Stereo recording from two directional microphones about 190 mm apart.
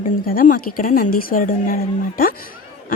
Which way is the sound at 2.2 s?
50° left (ahead or behind).